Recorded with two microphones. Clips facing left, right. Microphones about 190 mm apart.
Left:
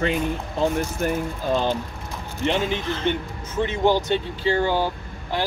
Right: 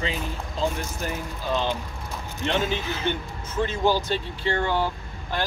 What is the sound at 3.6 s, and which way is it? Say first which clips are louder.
Speech: left 3 dB; 20° left (ahead or behind).